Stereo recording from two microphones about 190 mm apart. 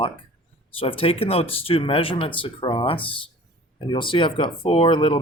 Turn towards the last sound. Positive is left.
turn(degrees=25)  # may be behind; listen again after turning